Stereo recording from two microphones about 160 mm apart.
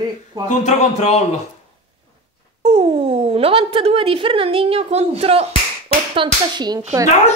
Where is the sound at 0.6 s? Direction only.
45° left (ahead or behind).